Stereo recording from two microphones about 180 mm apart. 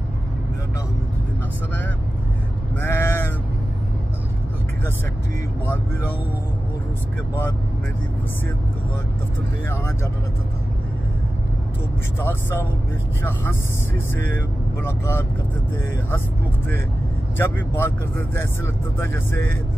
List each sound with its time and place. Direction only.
2.8 s sheep: 15° left (ahead or behind)
12.2 s speech: 15° left (ahead or behind)
17.4 s speech: 10° left (ahead or behind)